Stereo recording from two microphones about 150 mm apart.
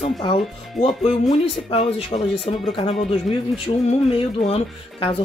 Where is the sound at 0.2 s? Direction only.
35° left (ahead or behind).